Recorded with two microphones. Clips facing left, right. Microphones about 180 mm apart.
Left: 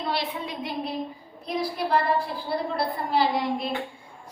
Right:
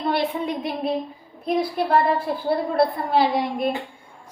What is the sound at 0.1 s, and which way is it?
Speech, 55° right (ahead or behind).